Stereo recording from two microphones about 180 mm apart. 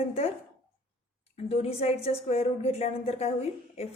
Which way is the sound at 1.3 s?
35° left (ahead or behind).